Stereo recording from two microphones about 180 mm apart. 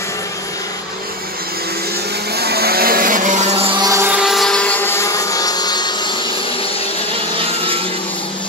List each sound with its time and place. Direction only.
2.3 s vehicle: 60° right (ahead or behind); by 6.1 s 25° left (ahead or behind)
7.3 s vehicle: 30° right (ahead or behind)